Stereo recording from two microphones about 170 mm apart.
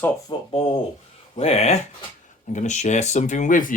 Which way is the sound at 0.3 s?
30° left (ahead or behind).